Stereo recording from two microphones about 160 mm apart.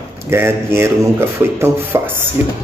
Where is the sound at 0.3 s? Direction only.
15° right (ahead or behind).